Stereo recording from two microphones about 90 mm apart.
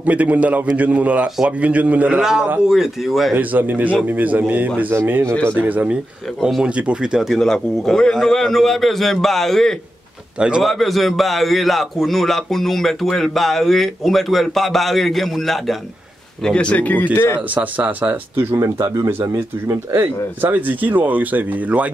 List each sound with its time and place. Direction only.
0.0 s a man's voice: 15° right (ahead or behind)
3.3 s a man's voice: 20° right (ahead or behind)
6.4 s a man's voice: 10° right (ahead or behind); by 17.4 s 25° left (ahead or behind)
17.6 s a man's voice: 20° right (ahead or behind)
20.5 s a man's voice: 20° right (ahead or behind)